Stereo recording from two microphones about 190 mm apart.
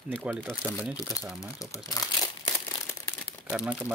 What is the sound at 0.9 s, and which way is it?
Speech, 20° left (ahead or behind).